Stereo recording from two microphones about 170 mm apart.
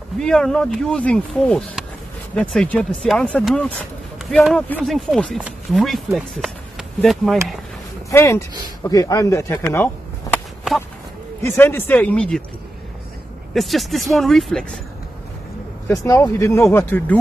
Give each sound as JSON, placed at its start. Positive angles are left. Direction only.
{"t": 0.2, "sound": "speech", "side_deg": 0}
{"t": 8.1, "sound": "speech", "side_deg": 15}
{"t": 11.4, "sound": "speech", "side_deg": 15}
{"t": 13.5, "sound": "speech", "side_deg": 0}
{"t": 15.9, "sound": "speech", "side_deg": 20}